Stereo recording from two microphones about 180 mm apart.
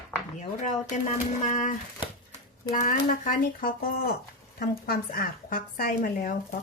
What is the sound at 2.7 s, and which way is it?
Speech, 50° left (ahead or behind).